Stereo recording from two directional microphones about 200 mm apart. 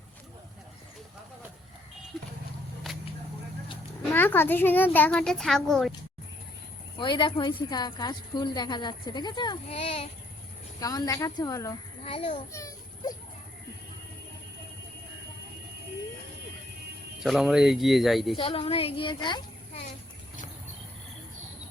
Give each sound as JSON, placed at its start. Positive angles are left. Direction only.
{"t": 4.1, "sound": "speech", "side_deg": 10}
{"t": 7.0, "sound": "a woman's voice", "side_deg": 25}
{"t": 10.8, "sound": "speech", "side_deg": 20}
{"t": 12.0, "sound": "a woman's voice", "side_deg": 30}
{"t": 12.5, "sound": "children playing", "side_deg": 15}
{"t": 17.2, "sound": "speech", "side_deg": 0}
{"t": 18.3, "sound": "a child's voice", "side_deg": 30}